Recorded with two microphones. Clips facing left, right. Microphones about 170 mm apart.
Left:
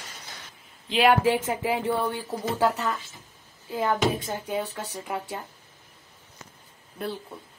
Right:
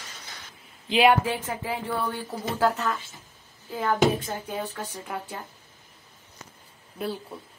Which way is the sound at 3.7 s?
10° left (ahead or behind).